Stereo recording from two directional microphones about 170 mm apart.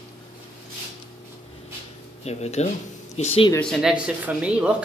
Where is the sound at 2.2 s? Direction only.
40° left (ahead or behind).